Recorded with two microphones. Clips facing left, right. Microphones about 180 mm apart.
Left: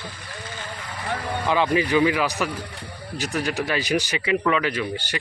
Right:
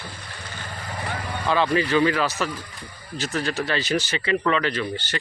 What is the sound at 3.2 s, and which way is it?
Speech, 15° left (ahead or behind).